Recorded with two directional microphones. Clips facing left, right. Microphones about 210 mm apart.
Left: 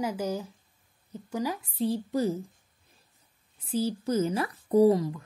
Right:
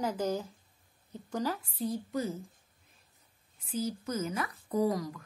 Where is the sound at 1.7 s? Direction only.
30° left (ahead or behind).